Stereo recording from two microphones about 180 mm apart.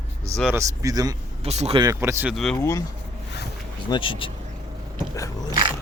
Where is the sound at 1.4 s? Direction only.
35° right (ahead or behind).